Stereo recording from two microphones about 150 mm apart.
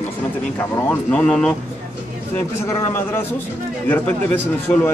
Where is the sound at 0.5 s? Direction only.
15° left (ahead or behind).